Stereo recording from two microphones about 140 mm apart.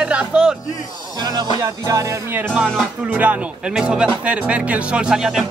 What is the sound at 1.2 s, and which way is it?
Music, 30° right (ahead or behind).